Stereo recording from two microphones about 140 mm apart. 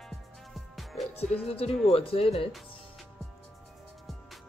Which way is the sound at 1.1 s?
45° left (ahead or behind).